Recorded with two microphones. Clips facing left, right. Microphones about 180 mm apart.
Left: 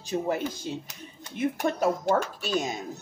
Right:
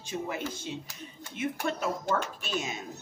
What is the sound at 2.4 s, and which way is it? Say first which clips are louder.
Speech: left 6 dB; 35° left (ahead or behind).